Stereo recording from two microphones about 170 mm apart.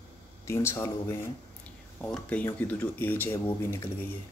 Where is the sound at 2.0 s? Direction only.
5° left (ahead or behind).